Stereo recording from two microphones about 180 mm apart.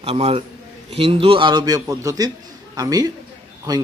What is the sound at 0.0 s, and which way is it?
A man's voice, 35° right (ahead or behind).